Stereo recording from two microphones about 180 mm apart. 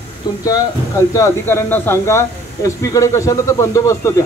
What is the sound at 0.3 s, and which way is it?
A man's voice, 20° left (ahead or behind).